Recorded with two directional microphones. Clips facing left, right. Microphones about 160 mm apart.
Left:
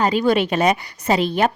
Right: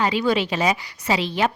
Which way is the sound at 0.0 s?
45° left (ahead or behind).